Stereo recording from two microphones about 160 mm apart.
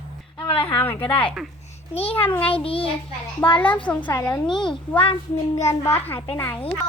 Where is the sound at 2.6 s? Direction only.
35° left (ahead or behind).